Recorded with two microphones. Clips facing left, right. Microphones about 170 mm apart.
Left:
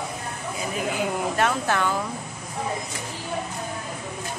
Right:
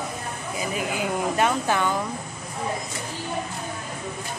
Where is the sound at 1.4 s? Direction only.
5° right (ahead or behind).